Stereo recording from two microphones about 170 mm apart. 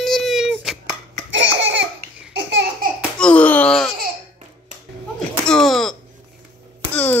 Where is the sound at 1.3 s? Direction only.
90° right.